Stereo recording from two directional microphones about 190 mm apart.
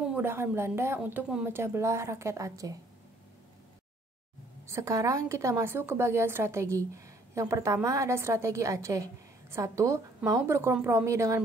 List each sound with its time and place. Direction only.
0.0 s a woman's voice: 10° right (ahead or behind)
4.6 s a woman's voice: 15° right (ahead or behind)